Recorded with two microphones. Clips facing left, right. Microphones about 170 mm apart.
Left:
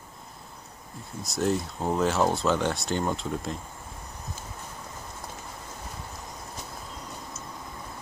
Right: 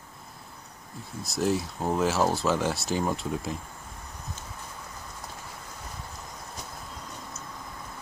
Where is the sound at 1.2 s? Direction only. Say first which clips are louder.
Even; centre (ahead or behind).